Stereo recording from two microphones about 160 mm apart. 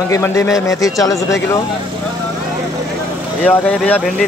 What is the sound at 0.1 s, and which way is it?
Speech, 15° left (ahead or behind).